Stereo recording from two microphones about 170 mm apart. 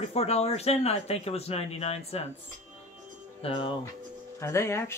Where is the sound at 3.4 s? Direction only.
30° left (ahead or behind).